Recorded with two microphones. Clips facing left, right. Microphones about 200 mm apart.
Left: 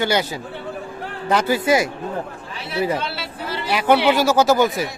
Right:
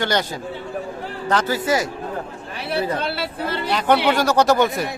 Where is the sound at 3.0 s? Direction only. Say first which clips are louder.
Right 4 dB; 55° right (ahead or behind).